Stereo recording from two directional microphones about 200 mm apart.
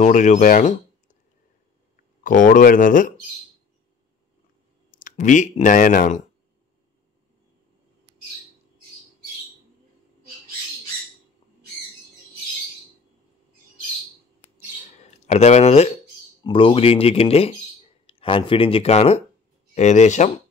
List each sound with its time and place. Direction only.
0.0 s speech: 35° left (ahead or behind)
2.2 s speech: 40° left (ahead or behind)
4.9 s speech: 40° left (ahead or behind)
15.2 s speech: 35° left (ahead or behind)